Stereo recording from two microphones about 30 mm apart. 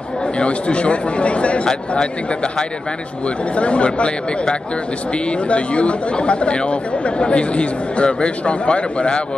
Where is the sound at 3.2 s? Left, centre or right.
Left.